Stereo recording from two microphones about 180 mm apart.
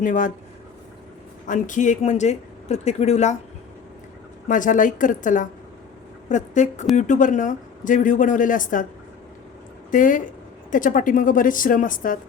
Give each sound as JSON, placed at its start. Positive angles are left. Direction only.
{"t": 0.0, "sound": "speech", "side_deg": 45}
{"t": 1.5, "sound": "speech", "side_deg": 45}
{"t": 4.4, "sound": "a woman's voice", "side_deg": 45}
{"t": 9.9, "sound": "speech", "side_deg": 45}